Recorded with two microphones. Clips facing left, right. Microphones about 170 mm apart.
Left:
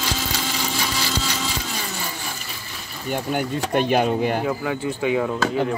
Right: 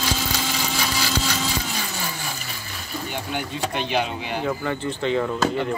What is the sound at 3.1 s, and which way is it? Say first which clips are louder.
Speech: left 8 dB; 45° left (ahead or behind).